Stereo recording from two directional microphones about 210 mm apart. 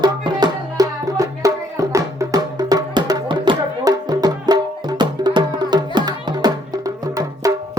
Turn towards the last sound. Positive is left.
turn(degrees=-15)  # may be behind; listen again after turning